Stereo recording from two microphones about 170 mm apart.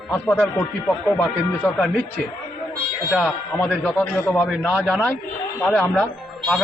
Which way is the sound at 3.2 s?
10° left (ahead or behind).